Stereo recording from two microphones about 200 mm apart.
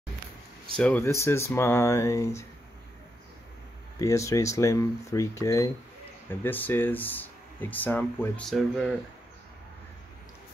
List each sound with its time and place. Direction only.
0.7 s speech: 5° left (ahead or behind)
4.0 s speech: 15° left (ahead or behind)